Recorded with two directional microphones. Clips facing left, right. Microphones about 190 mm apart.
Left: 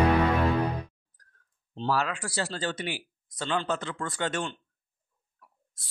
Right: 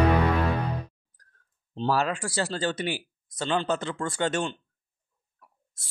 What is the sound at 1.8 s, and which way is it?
Speech, 30° right (ahead or behind).